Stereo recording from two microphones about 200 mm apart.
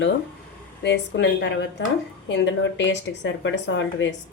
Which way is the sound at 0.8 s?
60° left (ahead or behind).